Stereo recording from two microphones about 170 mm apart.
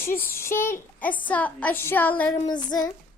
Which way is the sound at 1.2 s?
10° left (ahead or behind).